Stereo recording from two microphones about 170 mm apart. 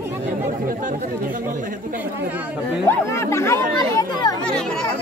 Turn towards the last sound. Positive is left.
turn(degrees=5)  # may be behind; listen again after turning